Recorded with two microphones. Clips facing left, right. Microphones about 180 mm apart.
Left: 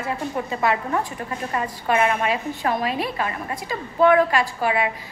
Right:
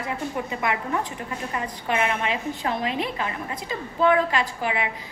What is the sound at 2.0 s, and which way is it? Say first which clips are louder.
A woman's voice: left 3 dB; 20° right (ahead or behind).